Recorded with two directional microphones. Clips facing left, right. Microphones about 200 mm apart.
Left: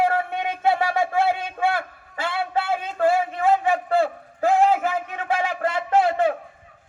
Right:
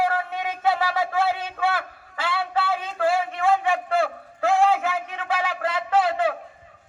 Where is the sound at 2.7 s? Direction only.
50° left (ahead or behind).